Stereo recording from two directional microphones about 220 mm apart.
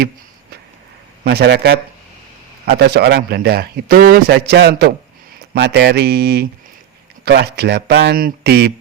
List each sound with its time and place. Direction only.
1.2 s a man's voice: 50° right (ahead or behind)